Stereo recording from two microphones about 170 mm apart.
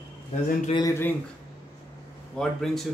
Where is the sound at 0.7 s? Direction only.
25° left (ahead or behind).